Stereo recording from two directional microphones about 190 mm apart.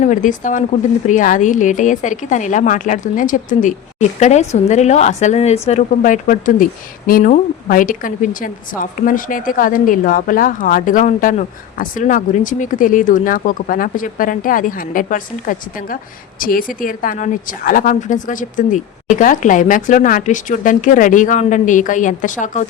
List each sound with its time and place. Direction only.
0.0 s a woman's voice: 40° left (ahead or behind)